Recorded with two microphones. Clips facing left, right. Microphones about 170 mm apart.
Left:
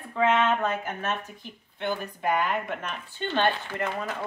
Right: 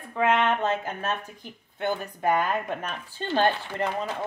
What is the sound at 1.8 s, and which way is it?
Speech, 45° right (ahead or behind).